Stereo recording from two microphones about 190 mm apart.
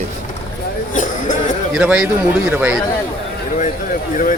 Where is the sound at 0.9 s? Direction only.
40° left (ahead or behind).